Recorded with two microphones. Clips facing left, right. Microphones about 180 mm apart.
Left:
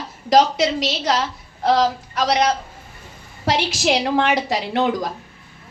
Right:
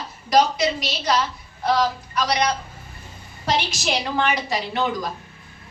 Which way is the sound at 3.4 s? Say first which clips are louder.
Left 4 dB; 90° left.